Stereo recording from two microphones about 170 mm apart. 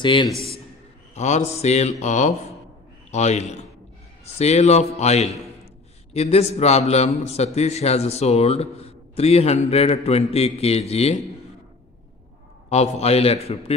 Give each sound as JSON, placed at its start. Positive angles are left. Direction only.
{"t": 0.0, "sound": "a man's voice", "side_deg": 30}
{"t": 1.1, "sound": "a man's voice", "side_deg": 40}
{"t": 12.6, "sound": "a man's voice", "side_deg": 40}